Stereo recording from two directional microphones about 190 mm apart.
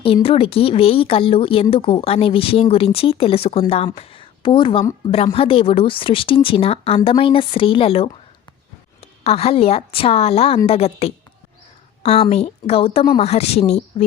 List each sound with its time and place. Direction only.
0.0 s a woman's voice: 30° left (ahead or behind)